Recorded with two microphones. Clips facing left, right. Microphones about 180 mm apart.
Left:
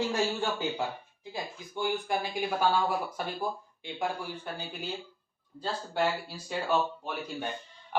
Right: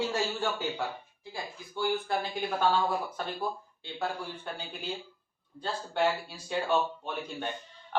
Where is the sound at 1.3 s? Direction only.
15° left (ahead or behind).